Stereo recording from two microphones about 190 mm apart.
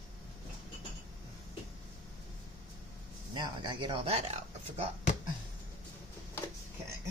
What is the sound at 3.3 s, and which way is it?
Speech, 20° right (ahead or behind).